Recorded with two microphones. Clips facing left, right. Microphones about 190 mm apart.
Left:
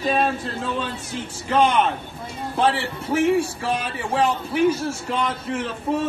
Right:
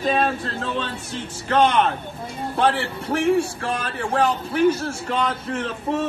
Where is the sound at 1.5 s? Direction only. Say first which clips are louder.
Right 1 dB; 10° left (ahead or behind).